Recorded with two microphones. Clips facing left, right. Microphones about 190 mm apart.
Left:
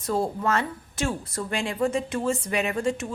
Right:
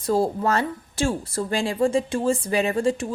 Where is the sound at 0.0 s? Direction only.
35° right (ahead or behind).